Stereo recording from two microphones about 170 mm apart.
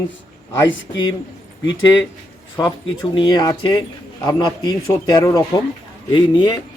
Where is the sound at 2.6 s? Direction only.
20° left (ahead or behind).